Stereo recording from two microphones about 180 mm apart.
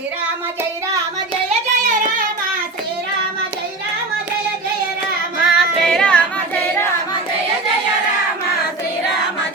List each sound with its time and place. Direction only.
1.5 s child singing: 45° right (ahead or behind)
5.4 s singing: centre (ahead or behind)